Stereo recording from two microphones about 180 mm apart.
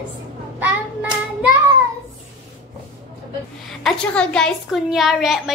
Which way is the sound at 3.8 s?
5° left (ahead or behind).